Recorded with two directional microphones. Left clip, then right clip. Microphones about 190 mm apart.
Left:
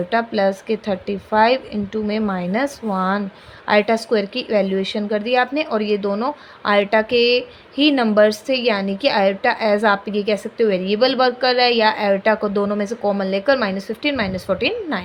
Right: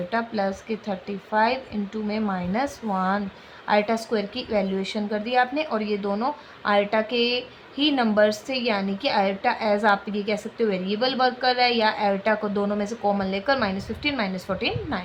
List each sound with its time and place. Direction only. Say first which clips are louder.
0.1 s a woman's voice: left 8 dB; 35° left (ahead or behind)